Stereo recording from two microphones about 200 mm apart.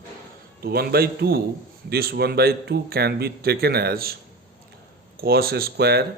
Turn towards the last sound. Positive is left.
turn(degrees=-50)  # may be behind; listen again after turning